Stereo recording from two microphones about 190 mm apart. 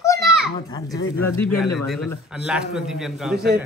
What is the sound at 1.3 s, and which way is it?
Speech, 10° left (ahead or behind).